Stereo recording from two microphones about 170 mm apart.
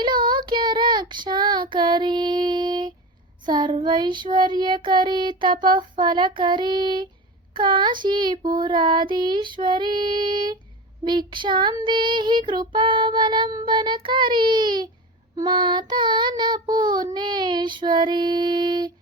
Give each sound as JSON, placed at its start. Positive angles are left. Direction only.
{"t": 0.0, "sound": "child singing", "side_deg": -25}